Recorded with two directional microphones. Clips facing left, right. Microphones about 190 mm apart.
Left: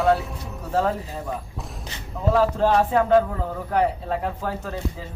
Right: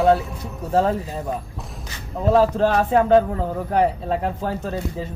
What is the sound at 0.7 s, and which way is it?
Speech, 30° right (ahead or behind).